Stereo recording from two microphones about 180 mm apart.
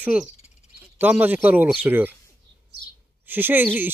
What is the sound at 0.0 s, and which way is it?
A man's voice, 5° right (ahead or behind).